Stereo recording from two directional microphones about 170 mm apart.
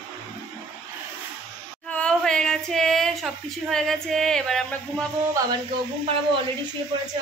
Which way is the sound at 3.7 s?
Centre (ahead or behind).